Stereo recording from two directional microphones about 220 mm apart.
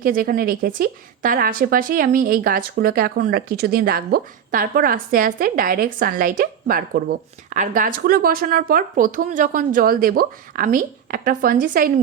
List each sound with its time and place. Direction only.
0.0 s speech: 40° right (ahead or behind)